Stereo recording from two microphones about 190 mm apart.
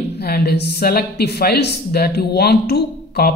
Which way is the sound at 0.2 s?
55° left (ahead or behind).